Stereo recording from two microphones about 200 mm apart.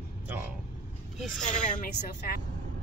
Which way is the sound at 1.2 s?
5° left (ahead or behind).